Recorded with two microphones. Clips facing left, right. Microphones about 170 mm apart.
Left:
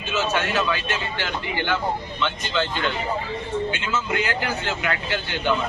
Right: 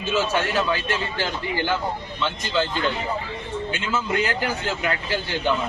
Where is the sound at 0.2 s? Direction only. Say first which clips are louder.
Left 1 dB; 35° right (ahead or behind).